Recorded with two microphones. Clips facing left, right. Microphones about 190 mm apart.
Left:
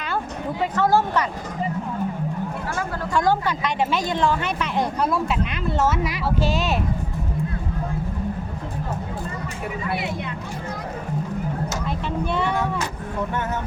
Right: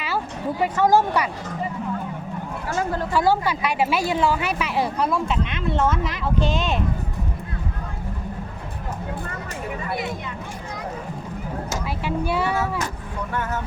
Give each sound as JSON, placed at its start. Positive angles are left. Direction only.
{"t": 0.6, "sound": "speech", "side_deg": -15}
{"t": 3.1, "sound": "speech", "side_deg": -5}
{"t": 12.0, "sound": "speech", "side_deg": -5}